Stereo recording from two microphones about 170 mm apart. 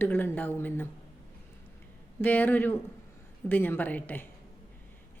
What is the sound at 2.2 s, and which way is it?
Speech, 10° left (ahead or behind).